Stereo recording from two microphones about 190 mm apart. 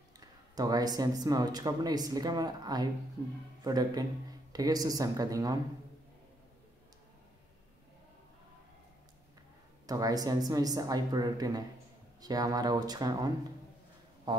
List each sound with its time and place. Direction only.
0.2 s speech: 20° right (ahead or behind)
9.8 s speech: 20° right (ahead or behind)